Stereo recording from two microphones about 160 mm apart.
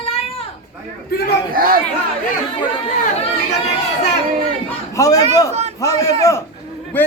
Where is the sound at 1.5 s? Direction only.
65° right (ahead or behind).